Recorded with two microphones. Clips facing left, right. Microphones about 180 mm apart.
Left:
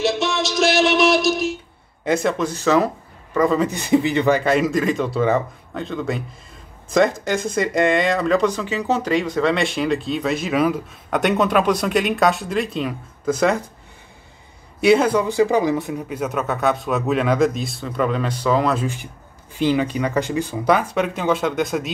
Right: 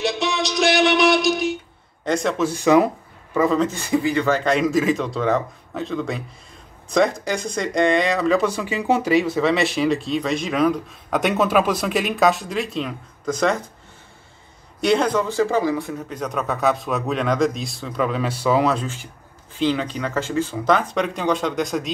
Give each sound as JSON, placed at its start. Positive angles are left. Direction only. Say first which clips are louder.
{"t": 0.0, "sound": "music", "louder": "left 2 dB", "side_deg": 0}
{"t": 2.0, "sound": "speech", "louder": "left 2 dB", "side_deg": 5}
{"t": 2.4, "sound": "speech", "louder": "right 6 dB", "side_deg": -15}
{"t": 3.5, "sound": "speech", "louder": "left 2 dB", "side_deg": 15}
{"t": 4.4, "sound": "speech", "louder": "left 1 dB", "side_deg": 5}
{"t": 14.8, "sound": "speech", "louder": "left 3 dB", "side_deg": 5}
{"t": 16.1, "sound": "speech", "louder": "left 2 dB", "side_deg": 5}
{"t": 19.5, "sound": "speech", "louder": "left 3 dB", "side_deg": 10}